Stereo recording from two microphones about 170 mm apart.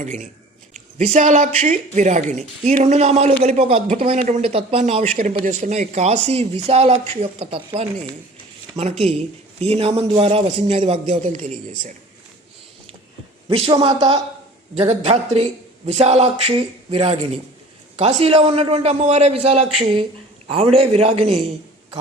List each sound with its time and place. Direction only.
0.0 s speech: 45° right (ahead or behind)
13.5 s a man's voice: 30° right (ahead or behind)
14.8 s speech: 40° right (ahead or behind)